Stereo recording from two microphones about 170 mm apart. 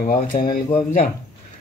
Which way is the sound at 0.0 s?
60° left (ahead or behind).